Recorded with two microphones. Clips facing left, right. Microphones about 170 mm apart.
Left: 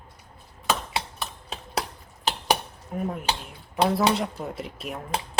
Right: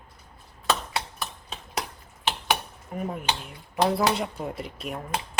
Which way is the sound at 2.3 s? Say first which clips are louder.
Left 1 dB; 40° left (ahead or behind).